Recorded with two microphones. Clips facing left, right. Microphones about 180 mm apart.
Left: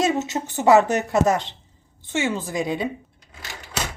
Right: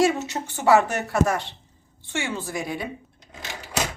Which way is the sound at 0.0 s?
20° left (ahead or behind).